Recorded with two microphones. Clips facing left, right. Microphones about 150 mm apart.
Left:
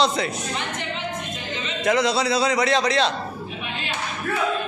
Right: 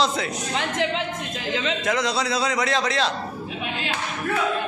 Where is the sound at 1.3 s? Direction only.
90° right.